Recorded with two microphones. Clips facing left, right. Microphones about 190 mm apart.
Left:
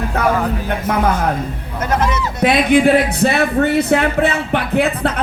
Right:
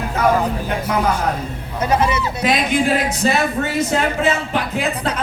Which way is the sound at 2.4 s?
60° left (ahead or behind).